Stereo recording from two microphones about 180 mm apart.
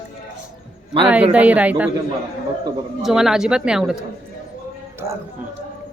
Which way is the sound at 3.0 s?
5° right (ahead or behind).